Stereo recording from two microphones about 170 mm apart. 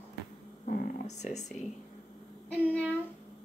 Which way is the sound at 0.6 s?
50° left (ahead or behind).